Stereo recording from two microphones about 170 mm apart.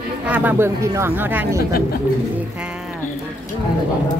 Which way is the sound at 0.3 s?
10° right (ahead or behind).